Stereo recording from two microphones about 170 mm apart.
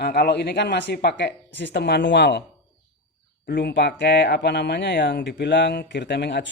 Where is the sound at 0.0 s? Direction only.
70° left (ahead or behind); by 2.4 s 90° left.